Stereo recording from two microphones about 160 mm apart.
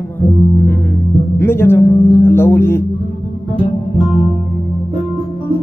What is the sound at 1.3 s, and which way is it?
Speech, 15° left (ahead or behind).